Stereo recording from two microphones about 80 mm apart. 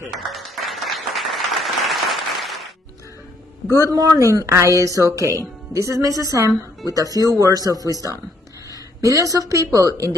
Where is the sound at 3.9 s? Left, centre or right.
Right.